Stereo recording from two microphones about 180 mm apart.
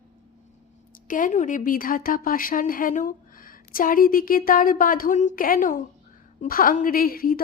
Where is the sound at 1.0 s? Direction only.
45° left (ahead or behind).